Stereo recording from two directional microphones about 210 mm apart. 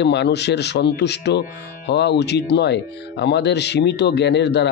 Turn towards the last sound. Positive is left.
turn(degrees=55)  # may be behind; listen again after turning